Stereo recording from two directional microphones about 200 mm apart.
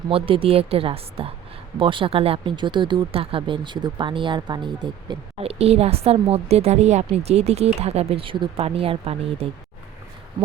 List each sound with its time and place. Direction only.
0.1 s speech: 25° right (ahead or behind)